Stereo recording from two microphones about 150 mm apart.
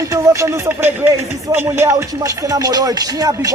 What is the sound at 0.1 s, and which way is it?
Speech, 20° right (ahead or behind).